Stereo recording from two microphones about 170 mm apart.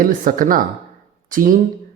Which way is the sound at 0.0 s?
55° right (ahead or behind).